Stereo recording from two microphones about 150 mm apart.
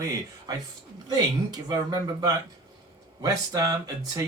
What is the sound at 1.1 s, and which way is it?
Speech, 25° right (ahead or behind).